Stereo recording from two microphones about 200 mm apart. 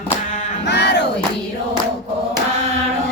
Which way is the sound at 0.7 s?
60° left (ahead or behind).